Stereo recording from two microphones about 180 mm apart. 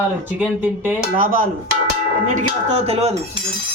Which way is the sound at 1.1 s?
50° right (ahead or behind).